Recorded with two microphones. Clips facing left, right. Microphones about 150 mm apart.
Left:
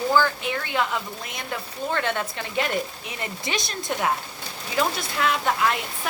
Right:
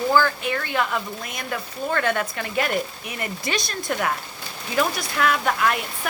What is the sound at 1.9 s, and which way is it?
A woman's voice, 20° left (ahead or behind).